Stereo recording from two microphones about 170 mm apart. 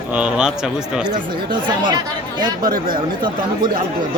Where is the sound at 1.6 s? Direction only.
25° right (ahead or behind).